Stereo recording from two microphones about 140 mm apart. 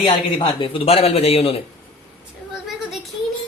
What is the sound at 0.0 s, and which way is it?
Speech, 40° left (ahead or behind).